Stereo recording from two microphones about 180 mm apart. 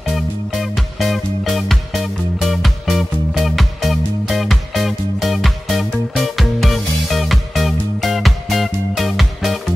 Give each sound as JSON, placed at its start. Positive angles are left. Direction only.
{"t": 0.1, "sound": "music", "side_deg": 0}